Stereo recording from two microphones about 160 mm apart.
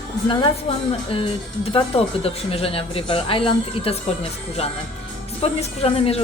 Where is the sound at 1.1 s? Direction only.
35° left (ahead or behind).